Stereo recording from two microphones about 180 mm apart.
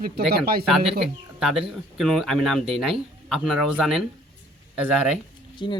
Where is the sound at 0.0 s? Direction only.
60° right (ahead or behind).